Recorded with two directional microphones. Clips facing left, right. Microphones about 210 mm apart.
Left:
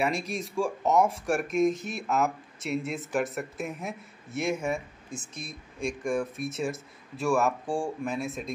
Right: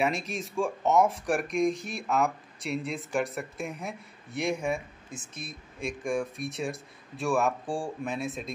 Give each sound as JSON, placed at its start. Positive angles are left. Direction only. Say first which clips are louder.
{"t": 0.0, "sound": "speech", "louder": "even", "side_deg": 0}